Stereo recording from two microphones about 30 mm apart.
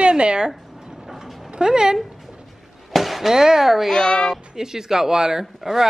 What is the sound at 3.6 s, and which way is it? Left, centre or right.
Speech, centre.